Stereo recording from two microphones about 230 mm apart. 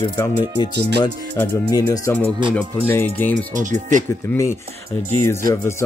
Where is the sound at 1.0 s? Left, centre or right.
Centre.